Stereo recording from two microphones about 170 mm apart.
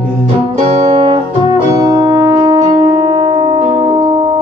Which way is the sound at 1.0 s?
25° right (ahead or behind).